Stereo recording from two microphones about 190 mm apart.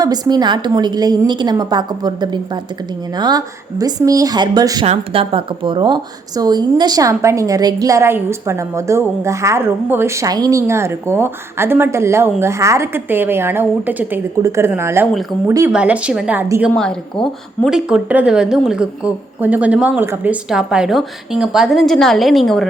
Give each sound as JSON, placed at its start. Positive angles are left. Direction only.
{"t": 0.0, "sound": "a woman's voice", "side_deg": -20}